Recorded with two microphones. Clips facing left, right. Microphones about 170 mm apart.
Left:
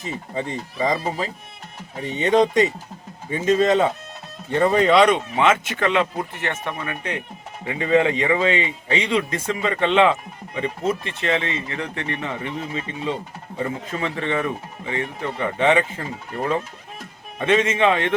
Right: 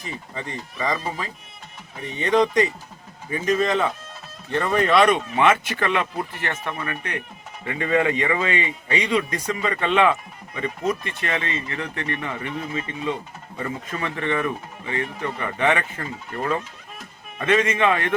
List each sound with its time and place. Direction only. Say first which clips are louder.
0.0 s speech: left 5 dB; 20° left (ahead or behind)
0.9 s speech: left 4 dB; 30° left (ahead or behind)